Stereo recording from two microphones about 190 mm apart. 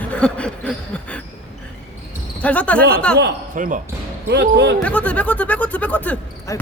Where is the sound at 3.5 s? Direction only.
45° right (ahead or behind).